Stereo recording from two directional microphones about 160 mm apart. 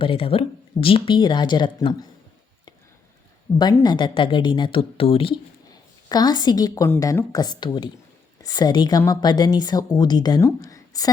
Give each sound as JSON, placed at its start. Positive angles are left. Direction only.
{"t": 0.0, "sound": "speech", "side_deg": 35}
{"t": 3.8, "sound": "speech", "side_deg": 30}
{"t": 6.1, "sound": "a woman's voice", "side_deg": 25}